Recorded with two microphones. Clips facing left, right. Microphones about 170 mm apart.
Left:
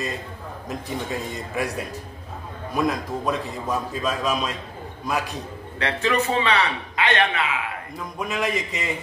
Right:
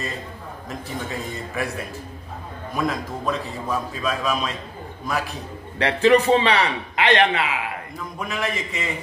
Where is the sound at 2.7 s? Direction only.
Centre (ahead or behind).